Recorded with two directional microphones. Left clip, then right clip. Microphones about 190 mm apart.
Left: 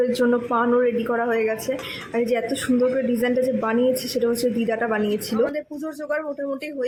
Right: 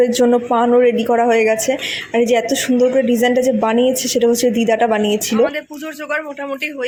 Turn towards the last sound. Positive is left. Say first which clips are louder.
# right 5 dB
turn(degrees=5)  # may be behind; listen again after turning